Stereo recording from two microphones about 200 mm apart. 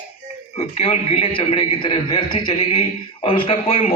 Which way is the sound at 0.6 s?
30° left (ahead or behind).